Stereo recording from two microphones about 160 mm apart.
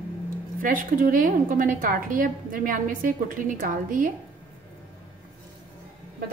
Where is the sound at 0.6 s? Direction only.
60° right (ahead or behind).